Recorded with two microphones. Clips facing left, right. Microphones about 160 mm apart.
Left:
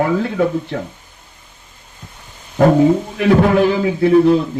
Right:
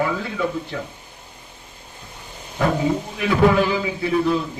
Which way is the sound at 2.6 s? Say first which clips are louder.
Left 9 dB; 50° left (ahead or behind).